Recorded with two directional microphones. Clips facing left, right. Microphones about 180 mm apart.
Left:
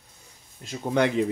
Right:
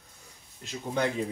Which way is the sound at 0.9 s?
75° left (ahead or behind).